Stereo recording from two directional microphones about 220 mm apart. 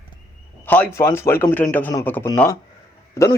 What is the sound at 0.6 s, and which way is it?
A man's voice, 5° left (ahead or behind).